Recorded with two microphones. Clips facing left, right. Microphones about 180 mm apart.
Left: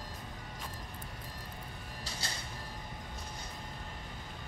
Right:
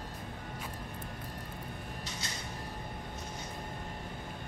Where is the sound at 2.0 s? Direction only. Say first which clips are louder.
Right 1 dB; 30° left (ahead or behind).